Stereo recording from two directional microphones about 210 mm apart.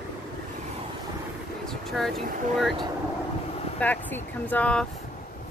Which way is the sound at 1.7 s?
Centre (ahead or behind).